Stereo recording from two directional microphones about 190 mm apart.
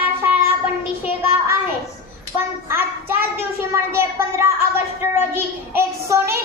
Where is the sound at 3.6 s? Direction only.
15° right (ahead or behind).